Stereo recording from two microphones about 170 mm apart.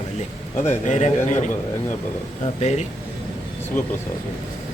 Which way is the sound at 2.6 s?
40° left (ahead or behind).